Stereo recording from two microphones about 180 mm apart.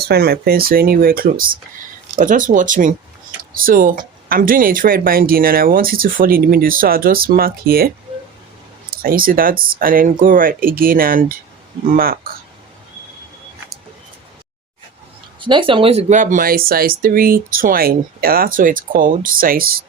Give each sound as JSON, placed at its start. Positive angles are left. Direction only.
{"t": 0.0, "sound": "speech", "side_deg": -60}
{"t": 9.0, "sound": "speech", "side_deg": -55}
{"t": 15.4, "sound": "speech", "side_deg": -25}